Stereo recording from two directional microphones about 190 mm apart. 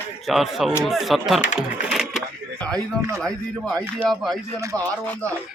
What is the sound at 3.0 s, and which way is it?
Speech, 15° right (ahead or behind).